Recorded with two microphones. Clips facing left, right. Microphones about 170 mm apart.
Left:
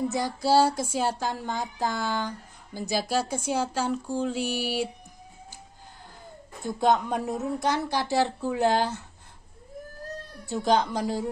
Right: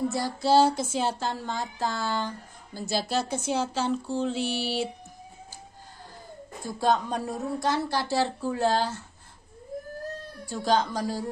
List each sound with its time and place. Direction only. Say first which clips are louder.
0.1 s a woman's voice: even; 15° left (ahead or behind)
6.6 s a woman's voice: left 2 dB; 20° left (ahead or behind)
10.4 s speech: left 1 dB; 20° left (ahead or behind)